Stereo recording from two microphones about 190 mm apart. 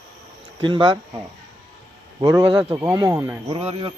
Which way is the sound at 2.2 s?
20° right (ahead or behind).